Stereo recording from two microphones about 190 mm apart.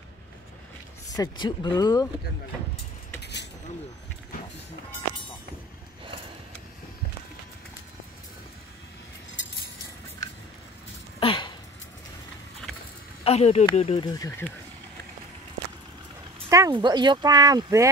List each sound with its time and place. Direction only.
1.1 s speech: 20° left (ahead or behind)
3.2 s cutlery: 60° left (ahead or behind)
11.1 s a sound: 25° left (ahead or behind)
13.2 s speech: 30° left (ahead or behind)
16.4 s speech: 20° right (ahead or behind)